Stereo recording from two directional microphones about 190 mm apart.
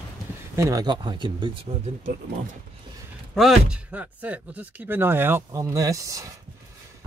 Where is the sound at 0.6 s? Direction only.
15° right (ahead or behind).